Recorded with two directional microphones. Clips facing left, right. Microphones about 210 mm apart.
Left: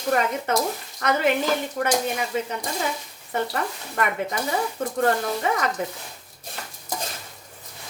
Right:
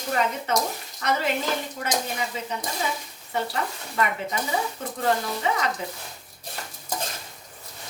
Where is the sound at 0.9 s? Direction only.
55° left (ahead or behind).